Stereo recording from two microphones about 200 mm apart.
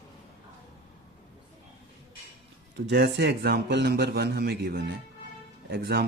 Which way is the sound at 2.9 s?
55° right (ahead or behind).